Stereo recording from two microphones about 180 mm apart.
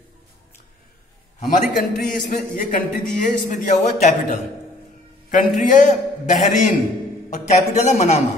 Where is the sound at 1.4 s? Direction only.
50° left (ahead or behind).